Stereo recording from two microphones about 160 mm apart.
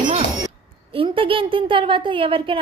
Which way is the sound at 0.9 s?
35° right (ahead or behind).